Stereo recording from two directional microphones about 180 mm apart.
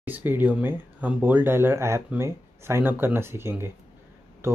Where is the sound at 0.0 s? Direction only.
10° right (ahead or behind).